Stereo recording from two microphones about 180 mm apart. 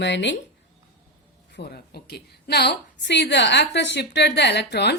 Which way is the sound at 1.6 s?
65° left (ahead or behind).